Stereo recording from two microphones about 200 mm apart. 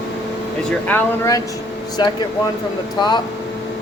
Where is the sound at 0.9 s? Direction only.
15° left (ahead or behind).